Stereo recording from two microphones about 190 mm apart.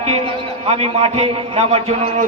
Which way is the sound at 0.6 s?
30° right (ahead or behind).